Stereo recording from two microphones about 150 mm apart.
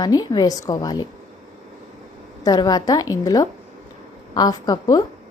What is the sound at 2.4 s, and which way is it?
A woman's voice, 25° left (ahead or behind).